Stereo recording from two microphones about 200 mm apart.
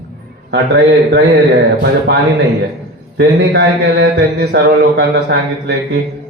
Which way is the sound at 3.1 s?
60° right (ahead or behind).